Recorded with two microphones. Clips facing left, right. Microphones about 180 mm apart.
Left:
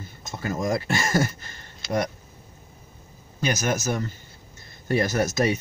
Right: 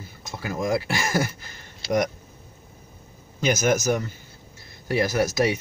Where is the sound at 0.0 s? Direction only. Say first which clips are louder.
Left 2 dB; 10° right (ahead or behind).